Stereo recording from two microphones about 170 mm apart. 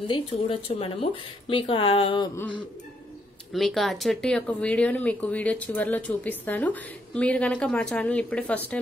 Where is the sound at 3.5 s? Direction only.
Centre (ahead or behind).